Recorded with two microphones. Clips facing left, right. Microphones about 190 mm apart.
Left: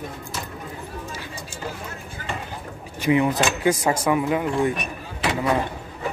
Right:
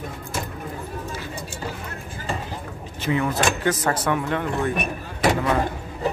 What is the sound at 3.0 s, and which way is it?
Speech, 15° left (ahead or behind).